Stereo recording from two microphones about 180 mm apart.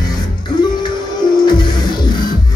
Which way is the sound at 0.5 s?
25° left (ahead or behind).